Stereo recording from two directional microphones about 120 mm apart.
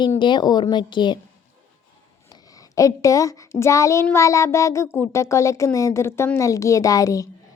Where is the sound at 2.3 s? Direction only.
30° left (ahead or behind).